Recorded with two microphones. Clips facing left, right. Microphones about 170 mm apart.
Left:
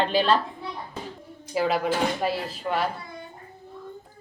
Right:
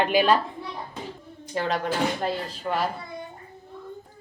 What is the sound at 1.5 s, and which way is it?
Speech, 10° left (ahead or behind).